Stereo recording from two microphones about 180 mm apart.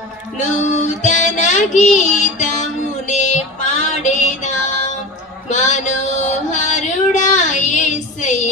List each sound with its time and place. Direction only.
0.6 s child singing: 40° left (ahead or behind)
3.1 s music: 40° left (ahead or behind)
5.5 s female singing: 40° left (ahead or behind)